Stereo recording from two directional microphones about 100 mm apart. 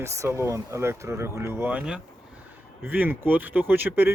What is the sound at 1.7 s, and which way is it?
Speech, 10° right (ahead or behind).